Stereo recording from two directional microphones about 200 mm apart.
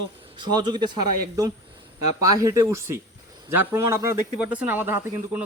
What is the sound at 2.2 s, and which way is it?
A man's voice, 15° right (ahead or behind).